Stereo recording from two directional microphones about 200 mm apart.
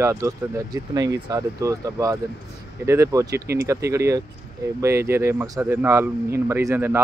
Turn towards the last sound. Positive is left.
turn(degrees=-10)  # may be behind; listen again after turning